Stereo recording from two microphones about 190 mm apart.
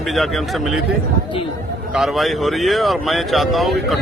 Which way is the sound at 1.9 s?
Centre (ahead or behind).